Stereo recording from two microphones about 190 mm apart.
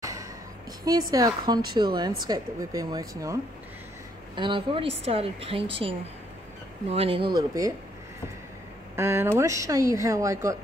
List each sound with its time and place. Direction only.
0.0 s music: 15° right (ahead or behind)
0.8 s speech: 20° right (ahead or behind)
4.4 s speech: 25° right (ahead or behind)
8.9 s speech: 15° right (ahead or behind)